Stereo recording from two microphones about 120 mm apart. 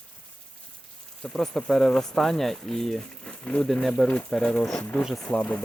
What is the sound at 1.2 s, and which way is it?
Speech, 5° left (ahead or behind).